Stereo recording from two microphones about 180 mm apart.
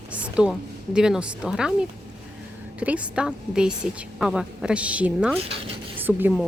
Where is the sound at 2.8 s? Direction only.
5° right (ahead or behind).